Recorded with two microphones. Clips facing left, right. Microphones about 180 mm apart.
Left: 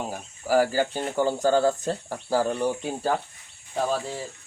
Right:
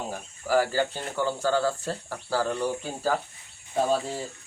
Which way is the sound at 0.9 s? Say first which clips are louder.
Left 4 dB; 45° left (ahead or behind).